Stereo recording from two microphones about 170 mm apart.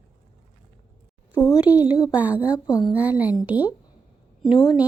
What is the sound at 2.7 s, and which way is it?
Speech, 25° left (ahead or behind).